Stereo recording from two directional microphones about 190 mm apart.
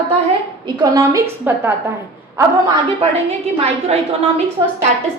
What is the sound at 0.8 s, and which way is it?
Speech, 20° right (ahead or behind).